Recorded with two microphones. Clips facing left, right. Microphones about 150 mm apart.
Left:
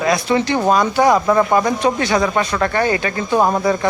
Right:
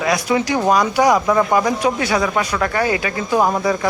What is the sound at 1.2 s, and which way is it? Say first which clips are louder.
Speech: left 1 dB; 5° left (ahead or behind).